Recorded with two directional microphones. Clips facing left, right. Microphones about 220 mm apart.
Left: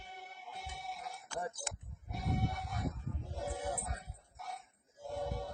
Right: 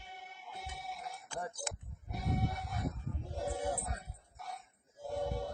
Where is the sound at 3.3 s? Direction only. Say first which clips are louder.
Right 3 dB; 30° right (ahead or behind).